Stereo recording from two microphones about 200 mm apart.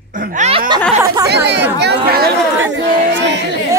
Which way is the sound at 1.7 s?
55° right (ahead or behind).